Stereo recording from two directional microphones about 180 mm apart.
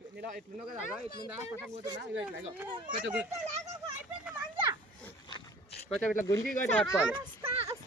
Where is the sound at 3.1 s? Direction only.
5° right (ahead or behind).